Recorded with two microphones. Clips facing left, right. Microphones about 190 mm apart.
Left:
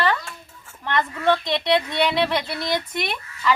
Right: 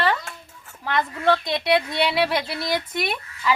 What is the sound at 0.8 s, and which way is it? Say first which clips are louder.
Speech: even; 5° right (ahead or behind).